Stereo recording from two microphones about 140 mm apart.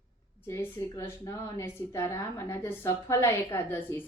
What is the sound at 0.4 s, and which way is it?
A woman's voice, 20° left (ahead or behind).